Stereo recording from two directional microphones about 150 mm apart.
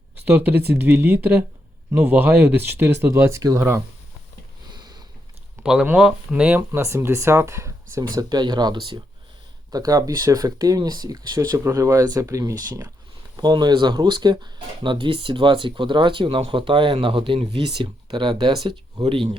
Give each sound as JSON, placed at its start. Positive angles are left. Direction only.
{"t": 0.3, "sound": "speech", "side_deg": -10}
{"t": 4.7, "sound": "sniff", "side_deg": -30}
{"t": 5.6, "sound": "speech", "side_deg": -5}
{"t": 6.6, "sound": "speech", "side_deg": -20}